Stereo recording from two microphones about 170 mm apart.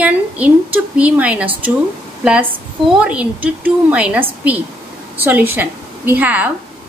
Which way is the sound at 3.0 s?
5° right (ahead or behind).